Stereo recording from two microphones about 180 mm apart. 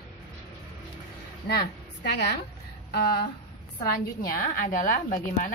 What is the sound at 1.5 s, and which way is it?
Speech, 65° left (ahead or behind).